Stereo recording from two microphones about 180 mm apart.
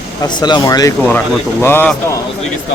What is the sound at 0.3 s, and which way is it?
Speech, 25° left (ahead or behind).